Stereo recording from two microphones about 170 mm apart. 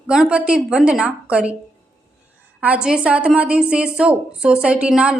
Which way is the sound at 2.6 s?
5° right (ahead or behind).